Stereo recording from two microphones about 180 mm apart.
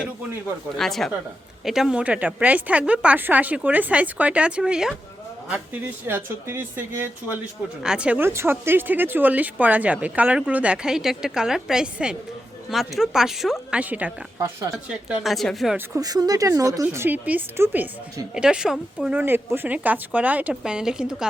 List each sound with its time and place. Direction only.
0.8 s speech: centre (ahead or behind)
6.1 s speech: 10° right (ahead or behind)
14.3 s speech: 20° right (ahead or behind)
14.8 s speech: 5° right (ahead or behind)
16.0 s speech: 20° right (ahead or behind); by 21.2 s 5° right (ahead or behind)